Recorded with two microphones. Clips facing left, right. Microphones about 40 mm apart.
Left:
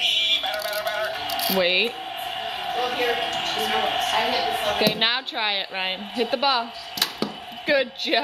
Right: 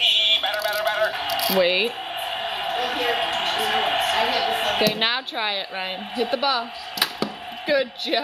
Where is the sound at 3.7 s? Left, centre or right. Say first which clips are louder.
Even; right.